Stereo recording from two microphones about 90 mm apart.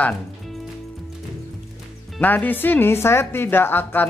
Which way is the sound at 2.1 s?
20° left (ahead or behind).